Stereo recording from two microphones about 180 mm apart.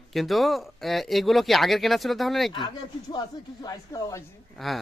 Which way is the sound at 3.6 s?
15° left (ahead or behind).